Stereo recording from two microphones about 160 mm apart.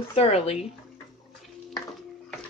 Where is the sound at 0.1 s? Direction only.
40° left (ahead or behind).